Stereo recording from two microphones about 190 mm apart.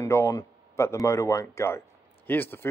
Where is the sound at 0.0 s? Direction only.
15° left (ahead or behind).